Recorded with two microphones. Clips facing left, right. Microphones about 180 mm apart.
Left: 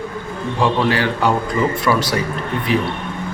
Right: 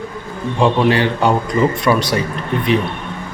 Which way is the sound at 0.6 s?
25° right (ahead or behind).